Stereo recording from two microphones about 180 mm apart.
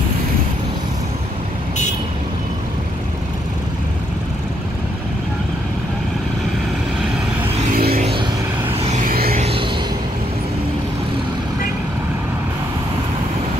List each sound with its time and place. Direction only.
7.7 s vehicle: 55° right (ahead or behind)
8.7 s vehicle: 35° right (ahead or behind)
9.0 s vehicle: 55° right (ahead or behind)
9.4 s music: 30° right (ahead or behind)